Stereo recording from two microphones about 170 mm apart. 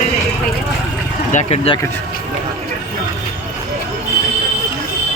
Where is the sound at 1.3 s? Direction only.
40° left (ahead or behind).